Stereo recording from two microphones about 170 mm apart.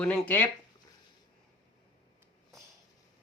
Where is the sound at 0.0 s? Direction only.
10° left (ahead or behind).